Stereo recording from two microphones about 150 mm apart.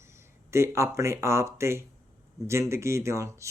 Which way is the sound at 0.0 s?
15° right (ahead or behind).